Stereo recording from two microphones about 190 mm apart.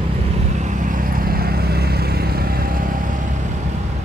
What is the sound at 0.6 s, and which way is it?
Vehicle, 45° right (ahead or behind).